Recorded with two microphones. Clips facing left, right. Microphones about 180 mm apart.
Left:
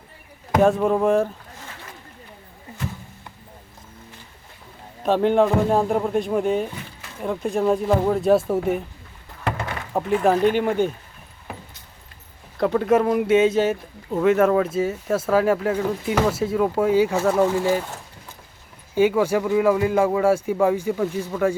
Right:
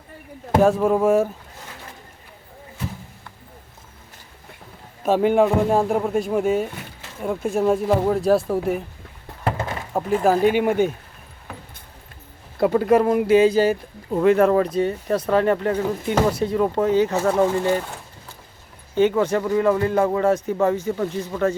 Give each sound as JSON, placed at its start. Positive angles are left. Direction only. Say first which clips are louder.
{"t": 0.6, "sound": "speech", "louder": "right 1 dB", "side_deg": 0}
{"t": 5.0, "sound": "speech", "louder": "right 1 dB", "side_deg": -5}
{"t": 9.4, "sound": "a sound", "louder": "right 2 dB", "side_deg": -25}
{"t": 10.2, "sound": "speech", "louder": "right 2 dB", "side_deg": -5}
{"t": 12.5, "sound": "speech", "louder": "right 2 dB", "side_deg": -5}
{"t": 18.9, "sound": "speech", "louder": "even", "side_deg": 10}